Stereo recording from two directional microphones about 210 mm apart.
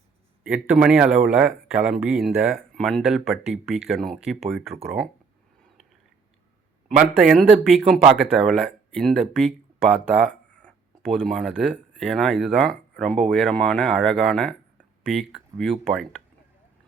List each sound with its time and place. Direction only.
0.4 s speech: 5° right (ahead or behind)
6.9 s speech: 5° right (ahead or behind)
10.6 s speech: 5° left (ahead or behind)